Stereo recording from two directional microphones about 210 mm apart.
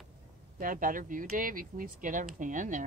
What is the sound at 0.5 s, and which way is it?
Speech, 40° right (ahead or behind).